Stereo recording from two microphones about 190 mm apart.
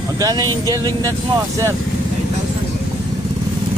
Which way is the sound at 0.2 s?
20° right (ahead or behind).